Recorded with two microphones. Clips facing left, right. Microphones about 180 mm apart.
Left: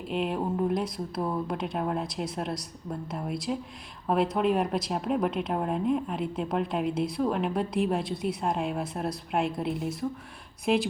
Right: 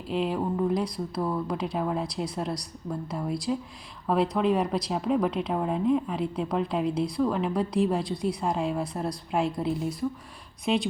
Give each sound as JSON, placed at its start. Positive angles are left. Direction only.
{"t": 0.1, "sound": "speech", "side_deg": 0}